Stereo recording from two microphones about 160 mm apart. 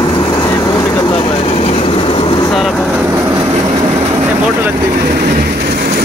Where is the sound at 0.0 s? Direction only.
25° left (ahead or behind).